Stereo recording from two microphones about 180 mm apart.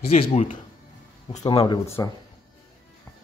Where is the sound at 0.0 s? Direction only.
35° left (ahead or behind).